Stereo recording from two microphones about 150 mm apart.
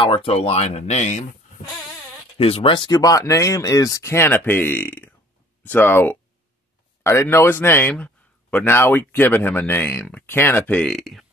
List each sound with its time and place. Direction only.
0.0 s speech: 40° left (ahead or behind)
2.3 s a man's voice: 40° left (ahead or behind); by 11.2 s centre (ahead or behind)